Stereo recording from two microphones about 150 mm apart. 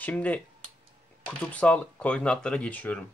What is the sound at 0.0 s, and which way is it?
Speech, 10° left (ahead or behind).